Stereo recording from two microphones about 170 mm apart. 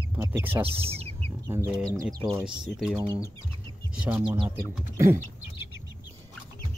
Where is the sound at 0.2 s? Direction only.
10° right (ahead or behind).